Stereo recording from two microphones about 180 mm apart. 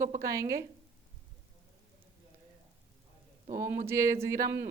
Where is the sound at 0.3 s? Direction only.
15° right (ahead or behind).